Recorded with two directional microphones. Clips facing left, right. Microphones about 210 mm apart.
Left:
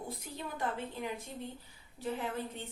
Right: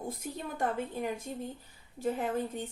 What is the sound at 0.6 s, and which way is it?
Speech, 50° right (ahead or behind).